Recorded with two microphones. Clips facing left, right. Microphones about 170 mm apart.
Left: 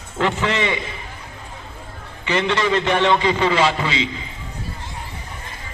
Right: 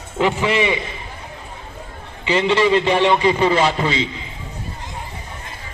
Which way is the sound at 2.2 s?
15° right (ahead or behind).